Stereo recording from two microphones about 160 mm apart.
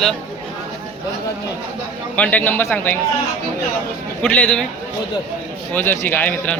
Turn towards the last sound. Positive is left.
turn(degrees=10)  # may be behind; listen again after turning